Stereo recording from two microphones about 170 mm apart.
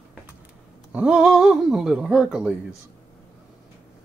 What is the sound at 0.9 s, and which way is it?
Speech, 5° right (ahead or behind).